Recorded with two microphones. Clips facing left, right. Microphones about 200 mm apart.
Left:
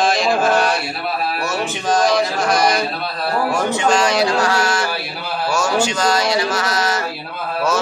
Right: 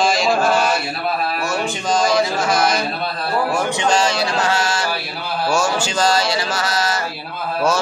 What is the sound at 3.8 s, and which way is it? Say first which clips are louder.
Mantra: left 3 dB; 25° right (ahead or behind).